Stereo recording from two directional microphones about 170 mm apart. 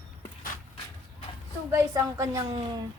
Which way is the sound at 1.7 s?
15° right (ahead or behind).